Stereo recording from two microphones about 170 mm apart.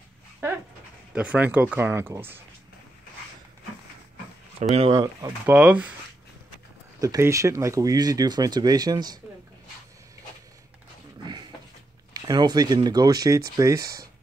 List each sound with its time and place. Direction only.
0.4 s a sound: 15° right (ahead or behind)
1.1 s speech: 5° right (ahead or behind)
4.9 s speech: 20° right (ahead or behind)
5.5 s speech: 10° right (ahead or behind)
7.0 s speech: 20° right (ahead or behind)
11.2 s a sound: 25° right (ahead or behind)
12.1 s speech: 25° right (ahead or behind)